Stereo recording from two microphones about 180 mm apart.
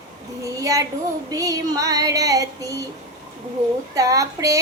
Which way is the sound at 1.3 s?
20° right (ahead or behind).